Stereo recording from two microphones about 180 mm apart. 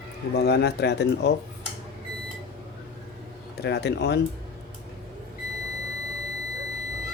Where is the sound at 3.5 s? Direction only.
65° left (ahead or behind).